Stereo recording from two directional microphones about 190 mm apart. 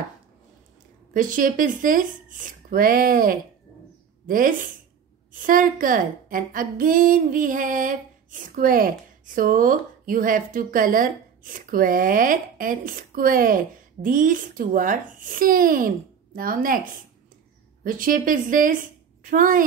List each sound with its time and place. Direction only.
1.1 s a woman's voice: 45° right (ahead or behind)
17.8 s a woman's voice: 45° right (ahead or behind)